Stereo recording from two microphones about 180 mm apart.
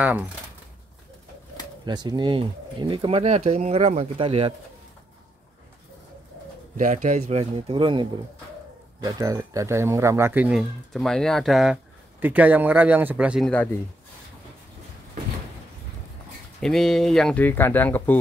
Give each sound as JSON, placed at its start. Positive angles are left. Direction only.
{"t": 1.9, "sound": "speech", "side_deg": -25}
{"t": 6.8, "sound": "speech", "side_deg": -40}
{"t": 16.6, "sound": "speech", "side_deg": 0}